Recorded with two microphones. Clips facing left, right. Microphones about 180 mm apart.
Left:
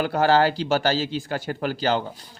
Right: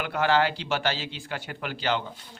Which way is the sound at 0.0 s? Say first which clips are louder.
Left 5 dB; 40° left (ahead or behind).